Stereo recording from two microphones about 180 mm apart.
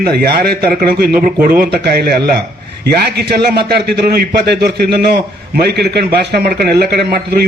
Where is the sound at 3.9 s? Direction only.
65° right (ahead or behind).